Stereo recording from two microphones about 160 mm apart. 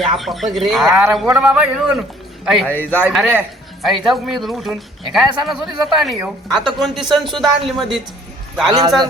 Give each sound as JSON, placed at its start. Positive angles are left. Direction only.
{"t": 0.0, "sound": "a man's voice", "side_deg": 0}
{"t": 2.6, "sound": "a man's voice", "side_deg": 10}
{"t": 3.1, "sound": "a man's voice", "side_deg": 0}
{"t": 8.6, "sound": "a man's voice", "side_deg": -25}